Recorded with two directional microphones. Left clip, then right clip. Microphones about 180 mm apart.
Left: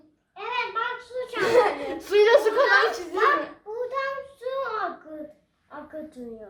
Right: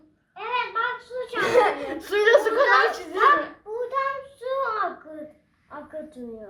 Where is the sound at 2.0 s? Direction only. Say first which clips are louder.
Left 1 dB; 25° left (ahead or behind).